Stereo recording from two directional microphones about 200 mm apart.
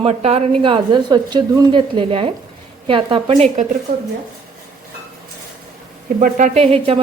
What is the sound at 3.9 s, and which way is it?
Speech, 50° right (ahead or behind).